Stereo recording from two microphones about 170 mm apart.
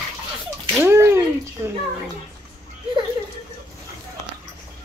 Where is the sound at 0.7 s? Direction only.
15° right (ahead or behind).